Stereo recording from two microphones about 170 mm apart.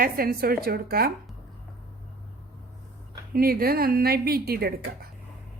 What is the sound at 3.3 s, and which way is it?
A woman's voice, 60° right (ahead or behind).